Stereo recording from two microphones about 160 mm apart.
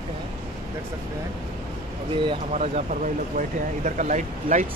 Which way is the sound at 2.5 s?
45° right (ahead or behind).